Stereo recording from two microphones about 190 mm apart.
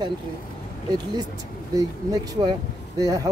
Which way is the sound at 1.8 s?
20° right (ahead or behind).